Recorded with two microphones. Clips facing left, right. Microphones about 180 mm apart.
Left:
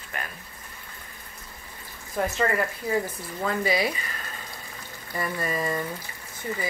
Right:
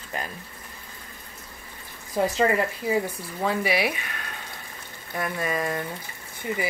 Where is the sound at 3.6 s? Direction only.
70° right (ahead or behind).